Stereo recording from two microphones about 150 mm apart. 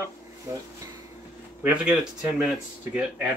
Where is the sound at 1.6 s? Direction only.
10° right (ahead or behind).